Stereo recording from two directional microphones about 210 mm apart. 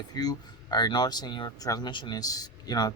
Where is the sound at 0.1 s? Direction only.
20° left (ahead or behind).